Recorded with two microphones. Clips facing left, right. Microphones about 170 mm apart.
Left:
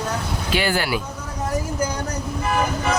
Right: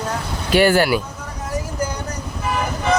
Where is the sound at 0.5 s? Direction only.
45° right (ahead or behind).